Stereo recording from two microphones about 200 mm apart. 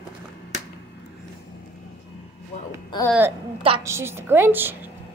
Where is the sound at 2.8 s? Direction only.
15° left (ahead or behind).